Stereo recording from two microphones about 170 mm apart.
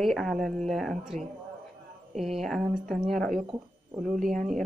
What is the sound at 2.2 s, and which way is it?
Speech, centre (ahead or behind).